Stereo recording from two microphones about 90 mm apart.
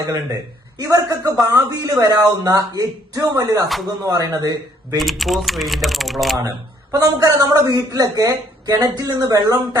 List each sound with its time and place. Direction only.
0.8 s a man's voice: 40° right (ahead or behind)
4.9 s speech: centre (ahead or behind)
6.9 s a man's voice: 45° right (ahead or behind)